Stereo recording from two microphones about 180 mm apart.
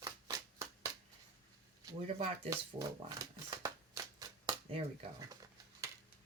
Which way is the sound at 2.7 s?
20° right (ahead or behind).